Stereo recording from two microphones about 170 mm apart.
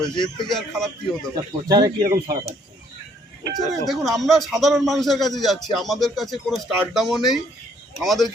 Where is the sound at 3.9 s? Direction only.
Centre (ahead or behind).